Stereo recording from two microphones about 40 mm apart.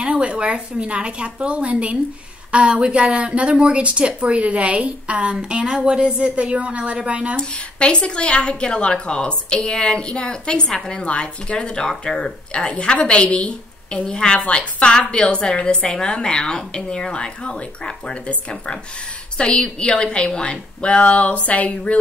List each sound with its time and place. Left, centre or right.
0.0 s speech: right
7.3 s speech: left
12.2 s speech: left
19.3 s speech: left